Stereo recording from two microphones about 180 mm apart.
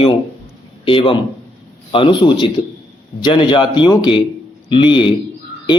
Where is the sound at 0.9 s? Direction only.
30° left (ahead or behind).